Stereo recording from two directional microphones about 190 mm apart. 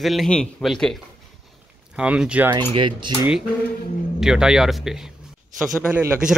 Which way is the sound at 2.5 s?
25° right (ahead or behind).